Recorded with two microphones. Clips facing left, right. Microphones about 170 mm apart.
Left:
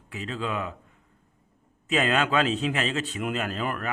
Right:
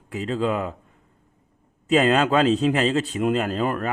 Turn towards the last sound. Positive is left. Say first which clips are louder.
# right 6 dB
turn(degrees=-35)  # may be behind; listen again after turning